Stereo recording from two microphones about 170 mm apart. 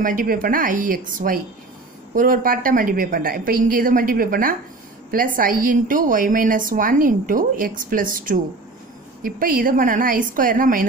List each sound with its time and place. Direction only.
0.0 s a woman's voice: 55° right (ahead or behind)